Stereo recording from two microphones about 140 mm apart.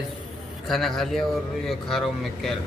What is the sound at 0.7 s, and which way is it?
A man's voice, centre (ahead or behind).